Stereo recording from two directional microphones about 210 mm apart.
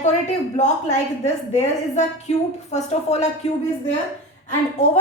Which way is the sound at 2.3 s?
30° left (ahead or behind).